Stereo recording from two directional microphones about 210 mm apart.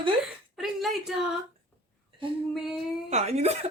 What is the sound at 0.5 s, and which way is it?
Speech, centre (ahead or behind).